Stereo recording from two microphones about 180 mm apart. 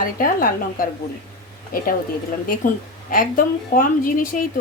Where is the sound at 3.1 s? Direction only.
50° left (ahead or behind).